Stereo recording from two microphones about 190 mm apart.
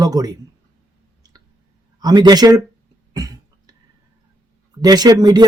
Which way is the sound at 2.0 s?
20° right (ahead or behind).